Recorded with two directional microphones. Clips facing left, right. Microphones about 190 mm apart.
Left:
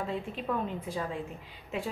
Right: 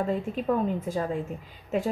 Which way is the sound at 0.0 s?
45° right (ahead or behind).